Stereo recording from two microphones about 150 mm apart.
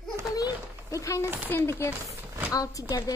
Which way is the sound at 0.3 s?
25° left (ahead or behind).